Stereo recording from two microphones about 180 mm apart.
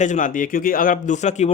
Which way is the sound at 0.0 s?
45° left (ahead or behind).